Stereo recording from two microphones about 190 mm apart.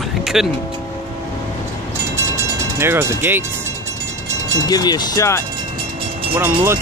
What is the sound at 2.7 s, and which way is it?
Speech, 15° right (ahead or behind).